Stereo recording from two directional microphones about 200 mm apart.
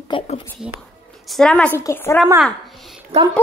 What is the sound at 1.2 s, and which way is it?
A woman's voice, 5° left (ahead or behind).